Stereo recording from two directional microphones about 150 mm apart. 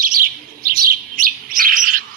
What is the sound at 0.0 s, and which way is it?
Bird, 70° right (ahead or behind).